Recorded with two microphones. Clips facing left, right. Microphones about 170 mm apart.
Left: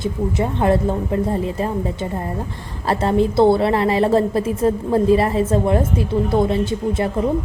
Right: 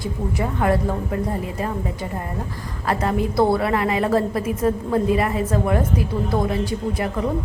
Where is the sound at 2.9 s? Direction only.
30° left (ahead or behind).